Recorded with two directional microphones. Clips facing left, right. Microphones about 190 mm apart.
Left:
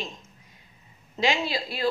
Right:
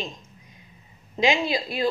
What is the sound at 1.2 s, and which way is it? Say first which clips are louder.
Speech: right 3 dB; 15° right (ahead or behind).